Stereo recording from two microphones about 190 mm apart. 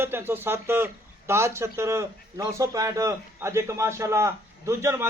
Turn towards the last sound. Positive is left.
turn(degrees=-15)  # may be behind; listen again after turning